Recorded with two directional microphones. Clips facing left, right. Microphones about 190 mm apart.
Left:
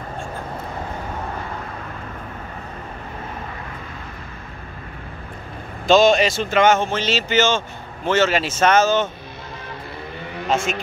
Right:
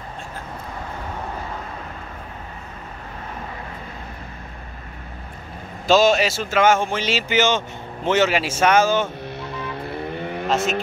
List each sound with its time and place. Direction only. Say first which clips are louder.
5.9 s a man's voice: left 2 dB; 5° right (ahead or behind)
9.5 s vehicle: right 4 dB; 60° right (ahead or behind)